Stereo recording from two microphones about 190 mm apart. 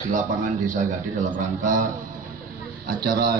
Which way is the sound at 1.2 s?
40° right (ahead or behind).